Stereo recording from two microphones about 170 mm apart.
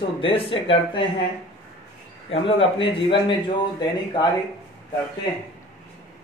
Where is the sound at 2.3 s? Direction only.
30° left (ahead or behind).